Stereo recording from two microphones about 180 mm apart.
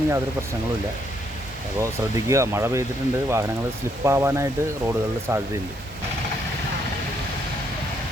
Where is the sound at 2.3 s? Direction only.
15° right (ahead or behind).